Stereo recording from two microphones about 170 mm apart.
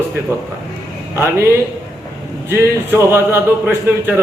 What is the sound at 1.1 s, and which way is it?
Speech, 15° right (ahead or behind).